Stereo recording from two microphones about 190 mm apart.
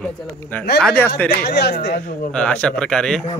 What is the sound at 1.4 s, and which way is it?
Speech, 60° left (ahead or behind).